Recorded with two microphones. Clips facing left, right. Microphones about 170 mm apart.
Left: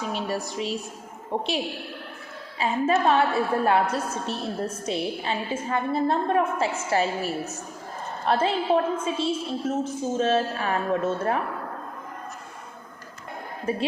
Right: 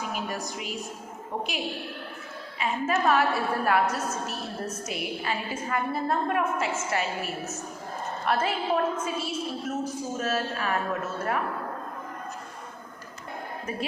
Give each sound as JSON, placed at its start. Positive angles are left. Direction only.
{"t": 1.3, "sound": "a woman's voice", "side_deg": 30}
{"t": 13.7, "sound": "a woman's voice", "side_deg": 30}